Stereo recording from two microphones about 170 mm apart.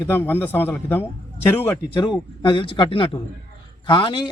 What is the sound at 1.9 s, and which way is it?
Speech, 25° left (ahead or behind).